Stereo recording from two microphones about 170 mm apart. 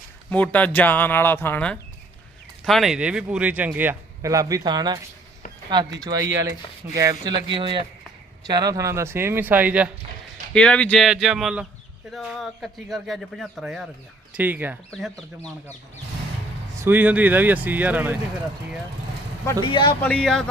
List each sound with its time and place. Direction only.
0.3 s a man's voice: 10° left (ahead or behind); by 4.9 s 25° right (ahead or behind)
6.0 s speech: 20° right (ahead or behind)
7.5 s a man's voice: 30° right (ahead or behind); by 9.9 s 10° right (ahead or behind)
10.5 s a man's voice: 5° left (ahead or behind); by 14.8 s 10° right (ahead or behind)
14.8 s a man's voice: centre (ahead or behind)
16.7 s a man's voice: 15° right (ahead or behind)
19.6 s speech: 30° left (ahead or behind)
20.0 s a man's voice: 5° left (ahead or behind)